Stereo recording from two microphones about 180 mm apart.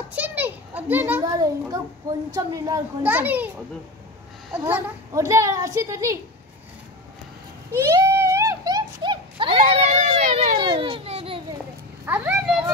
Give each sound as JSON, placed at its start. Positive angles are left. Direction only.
{"t": 0.1, "sound": "children playing", "side_deg": -10}
{"t": 2.3, "sound": "a child's voice", "side_deg": -20}
{"t": 4.5, "sound": "a child's voice", "side_deg": -10}
{"t": 7.7, "sound": "a sound", "side_deg": -15}
{"t": 9.8, "sound": "a sound", "side_deg": -40}
{"t": 10.6, "sound": "children playing", "side_deg": -30}
{"t": 12.1, "sound": "a child's voice", "side_deg": -10}